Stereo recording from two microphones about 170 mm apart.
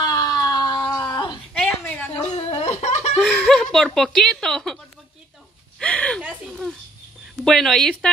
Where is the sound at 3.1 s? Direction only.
Centre (ahead or behind).